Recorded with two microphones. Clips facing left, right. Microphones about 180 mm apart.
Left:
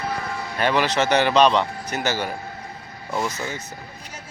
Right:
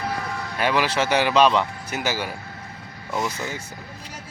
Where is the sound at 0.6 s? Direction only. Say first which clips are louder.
Left 1 dB; 5° right (ahead or behind).